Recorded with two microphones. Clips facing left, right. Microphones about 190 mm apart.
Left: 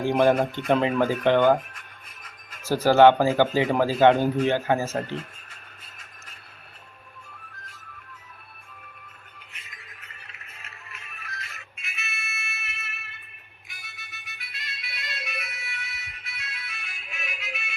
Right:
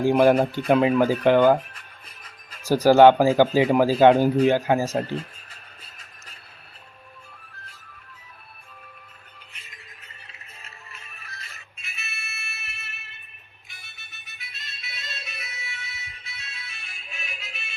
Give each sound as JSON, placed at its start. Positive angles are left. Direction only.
{"t": 0.0, "sound": "speech", "side_deg": -10}
{"t": 1.5, "sound": "music", "side_deg": -35}
{"t": 2.6, "sound": "speech", "side_deg": -15}
{"t": 4.9, "sound": "music", "side_deg": -35}
{"t": 9.5, "sound": "music", "side_deg": -30}